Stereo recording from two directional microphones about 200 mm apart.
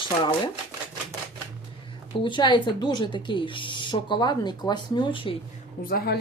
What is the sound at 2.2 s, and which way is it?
Speech, 25° left (ahead or behind).